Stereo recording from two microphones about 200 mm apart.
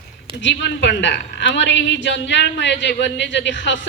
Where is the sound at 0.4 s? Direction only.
60° left (ahead or behind).